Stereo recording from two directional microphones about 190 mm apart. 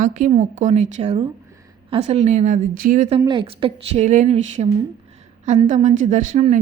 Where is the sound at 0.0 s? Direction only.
40° right (ahead or behind).